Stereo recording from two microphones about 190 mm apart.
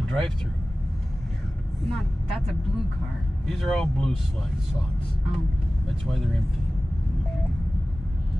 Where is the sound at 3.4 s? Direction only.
Centre (ahead or behind).